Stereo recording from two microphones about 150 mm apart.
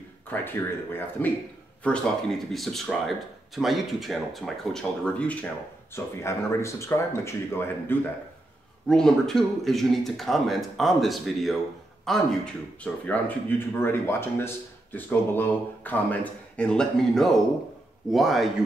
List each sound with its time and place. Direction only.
0.3 s speech: 15° left (ahead or behind)
8.8 s speech: 5° left (ahead or behind)